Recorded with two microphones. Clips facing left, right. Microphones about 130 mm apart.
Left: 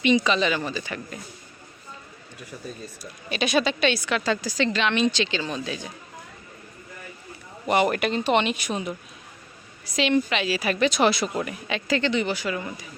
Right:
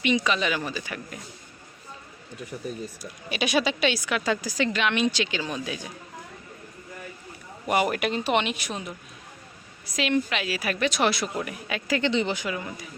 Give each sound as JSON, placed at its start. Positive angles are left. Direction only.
{"t": 0.3, "sound": "speech", "side_deg": -5}
{"t": 2.6, "sound": "speech", "side_deg": -15}
{"t": 7.7, "sound": "a woman's voice", "side_deg": -5}
{"t": 12.1, "sound": "speech", "side_deg": -20}
{"t": 12.5, "sound": "a woman's voice", "side_deg": 0}